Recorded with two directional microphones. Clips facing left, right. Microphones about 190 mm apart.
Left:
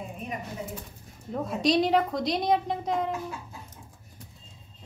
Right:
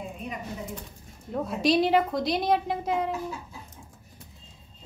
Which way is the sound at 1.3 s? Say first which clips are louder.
Right 1 dB; 5° right (ahead or behind).